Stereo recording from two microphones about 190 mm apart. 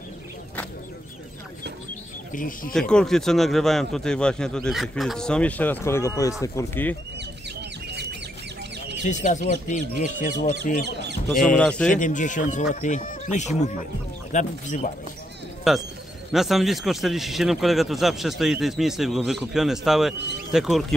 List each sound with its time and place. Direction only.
2.3 s speech: 45° left (ahead or behind)
2.7 s speech: 5° left (ahead or behind)
7.9 s chicken: 60° right (ahead or behind)
9.0 s speech: 40° left (ahead or behind)
11.4 s speech: 5° left (ahead or behind)
11.9 s speech: 40° left (ahead or behind)
15.7 s speech: centre (ahead or behind)